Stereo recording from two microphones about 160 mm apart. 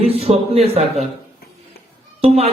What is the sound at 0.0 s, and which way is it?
Speech, 40° right (ahead or behind).